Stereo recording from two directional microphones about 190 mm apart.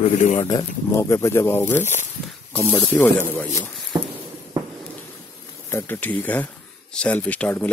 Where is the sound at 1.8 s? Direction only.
40° left (ahead or behind).